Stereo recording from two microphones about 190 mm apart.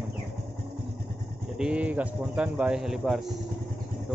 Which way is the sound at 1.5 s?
5° right (ahead or behind).